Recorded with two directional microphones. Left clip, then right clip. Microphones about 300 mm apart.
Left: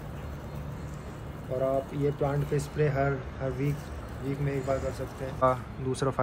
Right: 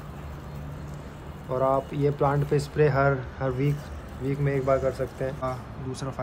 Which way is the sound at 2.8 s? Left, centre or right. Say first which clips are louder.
Right 6 dB; right.